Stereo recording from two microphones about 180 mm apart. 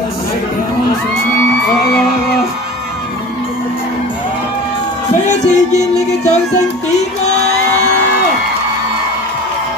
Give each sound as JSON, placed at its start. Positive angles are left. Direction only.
{"t": 5.3, "sound": "music", "side_deg": 40}